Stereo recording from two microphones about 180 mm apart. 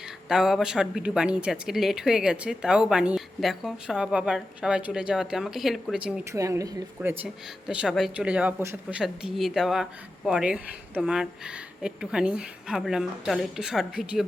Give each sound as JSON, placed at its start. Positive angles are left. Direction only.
{"t": 0.3, "sound": "speech", "side_deg": 0}
{"t": 6.3, "sound": "a woman's voice", "side_deg": -15}